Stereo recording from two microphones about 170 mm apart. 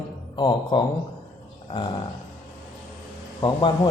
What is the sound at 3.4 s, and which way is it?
Speech, 30° left (ahead or behind).